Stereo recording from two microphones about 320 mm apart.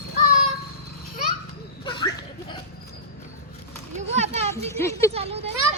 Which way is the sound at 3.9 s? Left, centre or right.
Right.